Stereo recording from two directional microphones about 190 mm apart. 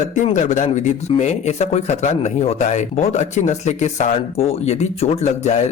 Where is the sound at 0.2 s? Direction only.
40° left (ahead or behind).